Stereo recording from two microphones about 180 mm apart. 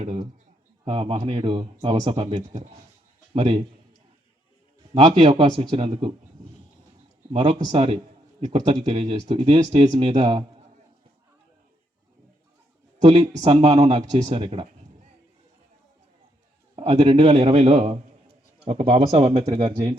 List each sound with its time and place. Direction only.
0.0 s speech: 35° right (ahead or behind)
2.5 s speech: 40° right (ahead or behind)
3.3 s speech: 30° right (ahead or behind)
4.9 s speech: 30° right (ahead or behind)
7.3 s speech: 30° right (ahead or behind)
13.0 s speech: 35° right (ahead or behind)
16.7 s speech: 30° right (ahead or behind)